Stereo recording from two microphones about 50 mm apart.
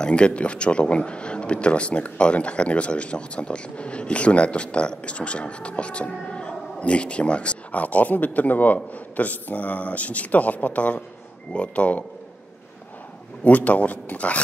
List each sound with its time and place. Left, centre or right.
0.0 s speech: left
13.4 s speech: left